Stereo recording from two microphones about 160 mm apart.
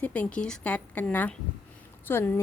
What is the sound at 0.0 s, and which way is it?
A woman's voice, 10° left (ahead or behind).